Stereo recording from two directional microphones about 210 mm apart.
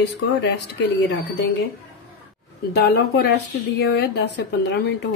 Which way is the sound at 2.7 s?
50° left (ahead or behind).